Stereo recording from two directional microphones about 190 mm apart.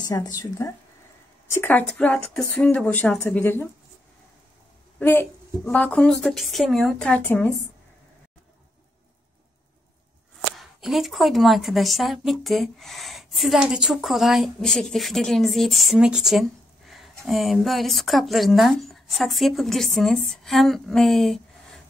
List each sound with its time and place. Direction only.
0.0 s speech: 20° left (ahead or behind)
4.9 s a woman's voice: 10° left (ahead or behind)
10.6 s a woman's voice: centre (ahead or behind)